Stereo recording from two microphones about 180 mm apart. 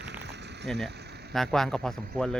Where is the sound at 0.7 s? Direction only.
Centre (ahead or behind).